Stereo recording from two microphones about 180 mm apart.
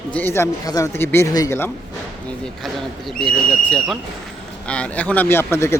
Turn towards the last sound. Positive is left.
turn(degrees=15)  # may be behind; listen again after turning